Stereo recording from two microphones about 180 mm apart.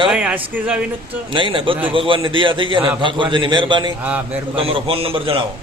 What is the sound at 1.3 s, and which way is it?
A man's voice, 30° right (ahead or behind).